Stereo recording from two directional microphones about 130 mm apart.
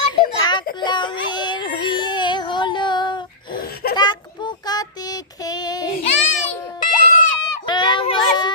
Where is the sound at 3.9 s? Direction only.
35° left (ahead or behind).